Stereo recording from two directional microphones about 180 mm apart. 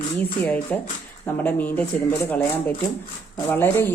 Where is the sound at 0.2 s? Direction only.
10° left (ahead or behind).